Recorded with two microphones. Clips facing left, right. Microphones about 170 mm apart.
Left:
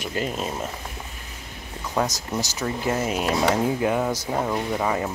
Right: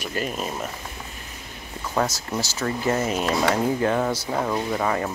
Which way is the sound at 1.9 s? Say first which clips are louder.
Even; 15° left (ahead or behind).